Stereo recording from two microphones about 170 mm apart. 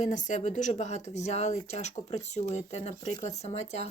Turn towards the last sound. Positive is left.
turn(degrees=40)  # may be behind; listen again after turning